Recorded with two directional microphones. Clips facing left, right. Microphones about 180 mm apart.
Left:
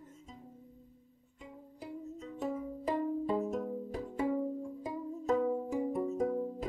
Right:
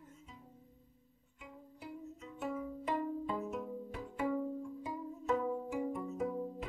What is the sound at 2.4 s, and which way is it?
Pizzicato, 35° left (ahead or behind).